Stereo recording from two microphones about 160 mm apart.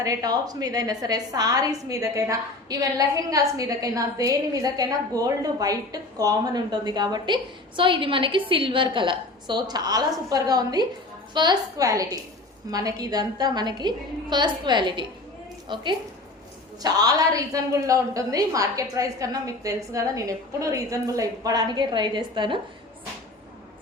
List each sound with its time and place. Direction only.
0.0 s a woman's voice: 25° right (ahead or behind)